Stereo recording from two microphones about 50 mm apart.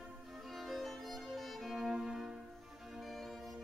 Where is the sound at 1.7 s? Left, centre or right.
Centre.